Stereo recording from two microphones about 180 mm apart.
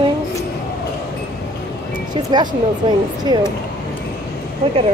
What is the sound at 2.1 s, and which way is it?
Speech, 25° right (ahead or behind).